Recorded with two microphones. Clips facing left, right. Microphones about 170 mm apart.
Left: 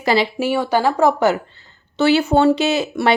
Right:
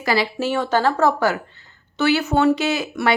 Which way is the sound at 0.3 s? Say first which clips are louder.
Left 2 dB; 10° left (ahead or behind).